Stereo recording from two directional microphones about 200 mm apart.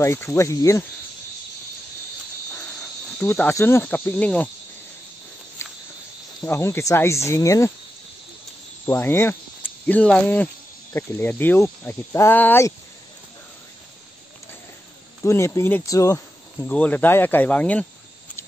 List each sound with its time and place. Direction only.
0.0 s speech: 15° left (ahead or behind)
3.2 s speech: 10° left (ahead or behind)
5.6 s cricket: 15° left (ahead or behind)
6.4 s speech: 15° left (ahead or behind)
8.8 s speech: 15° left (ahead or behind)
15.2 s speech: 15° left (ahead or behind)